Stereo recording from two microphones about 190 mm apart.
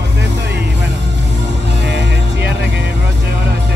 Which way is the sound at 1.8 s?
65° right (ahead or behind).